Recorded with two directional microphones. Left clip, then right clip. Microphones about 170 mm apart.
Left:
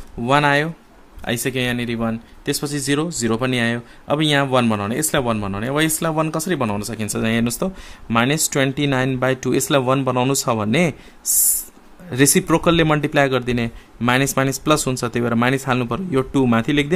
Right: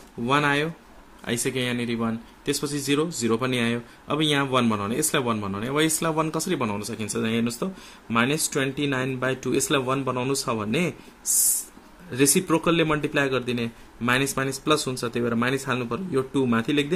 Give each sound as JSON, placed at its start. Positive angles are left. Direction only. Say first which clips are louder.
{"t": 0.2, "sound": "speech", "louder": "left 6 dB", "side_deg": 40}
{"t": 12.1, "sound": "a man's voice", "louder": "left 5 dB", "side_deg": 40}